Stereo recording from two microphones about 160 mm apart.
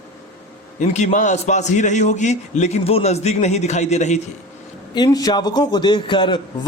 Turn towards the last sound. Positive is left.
turn(degrees=30)  # may be behind; listen again after turning